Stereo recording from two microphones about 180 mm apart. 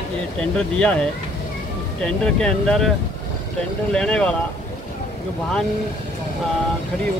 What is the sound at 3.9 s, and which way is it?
Speech, 5° left (ahead or behind).